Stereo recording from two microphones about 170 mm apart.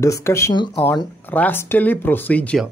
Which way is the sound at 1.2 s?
10° left (ahead or behind).